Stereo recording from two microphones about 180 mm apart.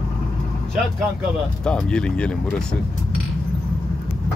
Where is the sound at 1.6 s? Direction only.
5° left (ahead or behind).